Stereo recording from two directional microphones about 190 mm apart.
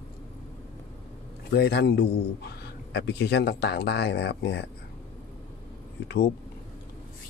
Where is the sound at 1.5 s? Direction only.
60° left (ahead or behind).